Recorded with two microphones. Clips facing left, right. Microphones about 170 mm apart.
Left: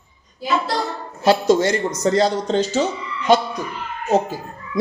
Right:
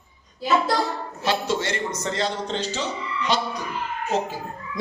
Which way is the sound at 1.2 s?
40° left (ahead or behind).